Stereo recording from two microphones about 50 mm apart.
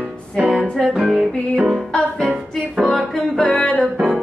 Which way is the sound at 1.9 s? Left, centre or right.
Centre.